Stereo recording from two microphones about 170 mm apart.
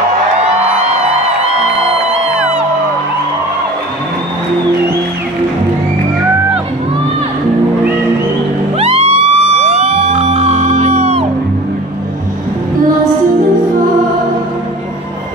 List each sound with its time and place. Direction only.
8.7 s music: 35° right (ahead or behind)